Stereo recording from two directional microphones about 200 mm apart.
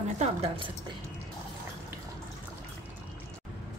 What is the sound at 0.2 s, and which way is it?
Speech, 30° right (ahead or behind).